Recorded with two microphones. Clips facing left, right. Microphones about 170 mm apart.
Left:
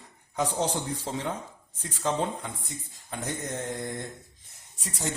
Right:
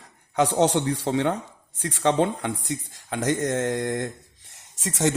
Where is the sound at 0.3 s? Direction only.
75° right (ahead or behind).